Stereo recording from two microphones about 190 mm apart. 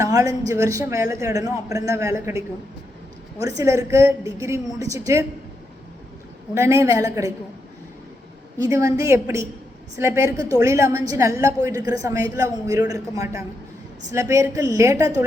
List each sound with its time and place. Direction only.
0.0 s a man's voice: 15° right (ahead or behind)
3.6 s a man's voice: 15° right (ahead or behind)
6.5 s a man's voice: 15° right (ahead or behind)
8.5 s a man's voice: 15° right (ahead or behind)